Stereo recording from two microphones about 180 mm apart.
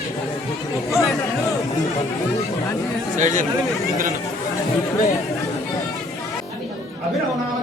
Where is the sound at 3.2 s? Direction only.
45° right (ahead or behind).